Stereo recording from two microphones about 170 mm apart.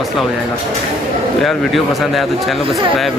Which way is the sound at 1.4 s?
Centre (ahead or behind).